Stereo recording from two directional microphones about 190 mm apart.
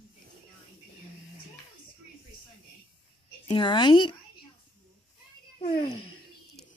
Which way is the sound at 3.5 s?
25° left (ahead or behind).